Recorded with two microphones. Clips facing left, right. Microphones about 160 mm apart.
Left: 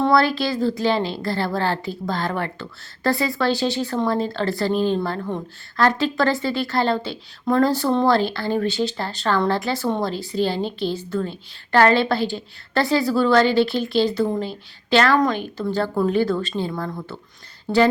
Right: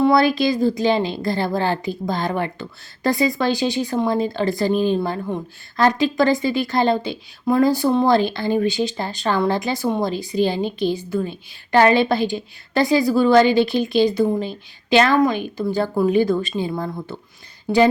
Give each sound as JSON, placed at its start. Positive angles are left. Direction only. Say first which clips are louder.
{"t": 0.0, "sound": "a woman's voice", "louder": "right 3 dB", "side_deg": -15}